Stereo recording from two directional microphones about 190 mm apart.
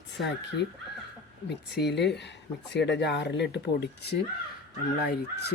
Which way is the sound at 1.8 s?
65° left (ahead or behind).